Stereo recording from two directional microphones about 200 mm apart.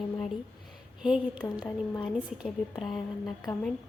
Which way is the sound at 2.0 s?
Centre (ahead or behind).